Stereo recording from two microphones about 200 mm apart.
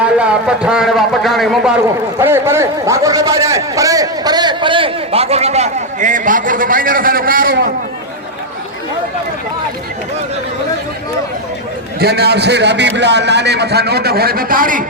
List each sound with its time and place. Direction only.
0.0 s a man's voice: 5° right (ahead or behind)
2.1 s a man's voice: 10° right (ahead or behind); by 7.7 s 45° right (ahead or behind)
11.9 s a man's voice: 55° right (ahead or behind)